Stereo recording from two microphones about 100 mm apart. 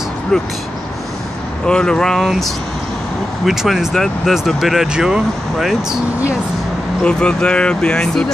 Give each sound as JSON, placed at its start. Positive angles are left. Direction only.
{"t": 0.3, "sound": "speech", "side_deg": 5}
{"t": 1.7, "sound": "speech", "side_deg": 10}
{"t": 7.0, "sound": "speech", "side_deg": 10}